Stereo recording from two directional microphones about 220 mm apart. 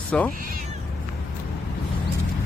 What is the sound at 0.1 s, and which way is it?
Speech, 5° left (ahead or behind).